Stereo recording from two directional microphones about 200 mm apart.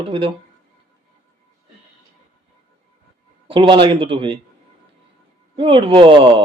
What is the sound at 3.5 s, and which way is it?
Speech, 25° right (ahead or behind).